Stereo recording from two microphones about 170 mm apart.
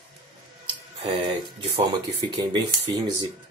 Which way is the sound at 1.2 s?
25° right (ahead or behind).